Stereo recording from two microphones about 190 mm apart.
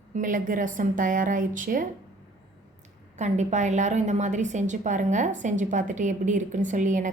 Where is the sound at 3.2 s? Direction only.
40° right (ahead or behind).